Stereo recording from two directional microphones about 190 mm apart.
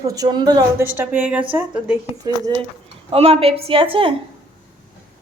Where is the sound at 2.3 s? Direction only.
20° right (ahead or behind).